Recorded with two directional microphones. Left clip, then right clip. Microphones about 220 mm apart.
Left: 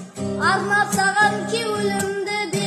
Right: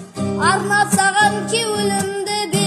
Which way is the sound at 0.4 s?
25° right (ahead or behind).